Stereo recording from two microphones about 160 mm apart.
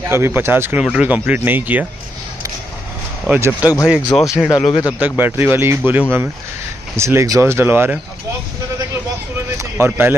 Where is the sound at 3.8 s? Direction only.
5° right (ahead or behind).